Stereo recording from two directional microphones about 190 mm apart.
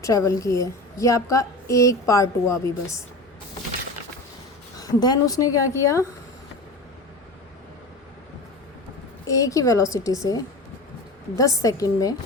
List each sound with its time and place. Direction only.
0.0 s a woman's voice: 15° left (ahead or behind)
4.8 s a woman's voice: 20° left (ahead or behind)
9.2 s a woman's voice: 15° left (ahead or behind)